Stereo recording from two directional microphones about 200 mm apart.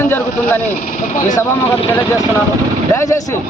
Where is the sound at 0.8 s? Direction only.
40° left (ahead or behind).